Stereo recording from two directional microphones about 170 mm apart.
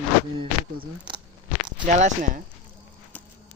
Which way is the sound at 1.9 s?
45° right (ahead or behind).